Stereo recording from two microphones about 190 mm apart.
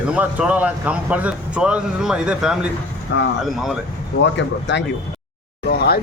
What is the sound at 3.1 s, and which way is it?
Speech, 70° left (ahead or behind).